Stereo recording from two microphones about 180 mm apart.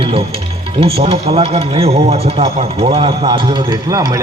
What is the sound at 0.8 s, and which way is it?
A man's voice, 35° right (ahead or behind).